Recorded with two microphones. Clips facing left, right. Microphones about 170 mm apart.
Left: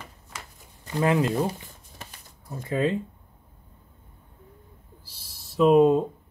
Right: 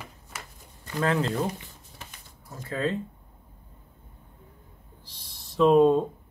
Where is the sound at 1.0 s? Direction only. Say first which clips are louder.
Left 3 dB; 15° left (ahead or behind).